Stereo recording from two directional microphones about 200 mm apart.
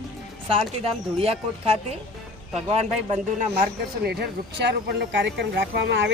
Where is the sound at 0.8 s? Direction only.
30° right (ahead or behind).